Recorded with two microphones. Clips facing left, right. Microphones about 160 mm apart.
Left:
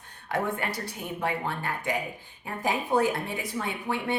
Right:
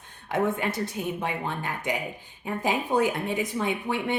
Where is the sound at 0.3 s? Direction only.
20° right (ahead or behind).